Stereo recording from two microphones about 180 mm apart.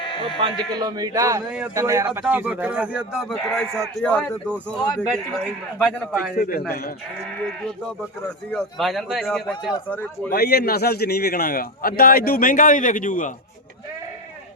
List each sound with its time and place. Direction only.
0.0 s bleat: 25° left (ahead or behind)
0.8 s a man's voice: 20° right (ahead or behind); by 5.4 s 5° left (ahead or behind)
6.3 s a man's voice: 55° left (ahead or behind)
8.4 s a man's voice: centre (ahead or behind)
10.3 s a man's voice: 60° left (ahead or behind)